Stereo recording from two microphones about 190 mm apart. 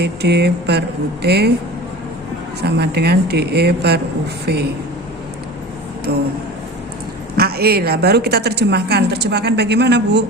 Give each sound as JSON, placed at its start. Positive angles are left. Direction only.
{"t": 0.0, "sound": "a woman's voice", "side_deg": -60}
{"t": 2.6, "sound": "a woman's voice", "side_deg": -60}
{"t": 6.1, "sound": "a woman's voice", "side_deg": -55}
{"t": 7.3, "sound": "a woman's voice", "side_deg": -55}